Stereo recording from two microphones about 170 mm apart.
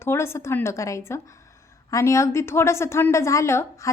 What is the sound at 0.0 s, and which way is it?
A woman's voice, 15° left (ahead or behind).